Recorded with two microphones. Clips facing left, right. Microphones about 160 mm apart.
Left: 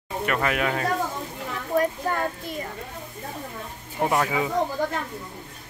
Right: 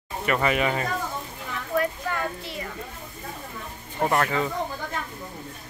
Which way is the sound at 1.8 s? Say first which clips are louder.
Left 3 dB; 40° left (ahead or behind).